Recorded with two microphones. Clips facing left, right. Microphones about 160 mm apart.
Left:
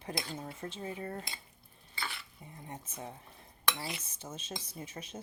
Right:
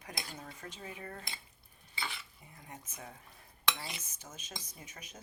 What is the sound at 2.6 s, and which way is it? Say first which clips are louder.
Cutlery: left 5 dB; 30° left (ahead or behind).